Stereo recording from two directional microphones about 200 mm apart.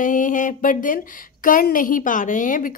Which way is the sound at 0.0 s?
40° left (ahead or behind).